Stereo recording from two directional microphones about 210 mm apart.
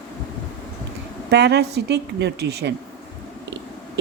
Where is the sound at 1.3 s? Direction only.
55° right (ahead or behind).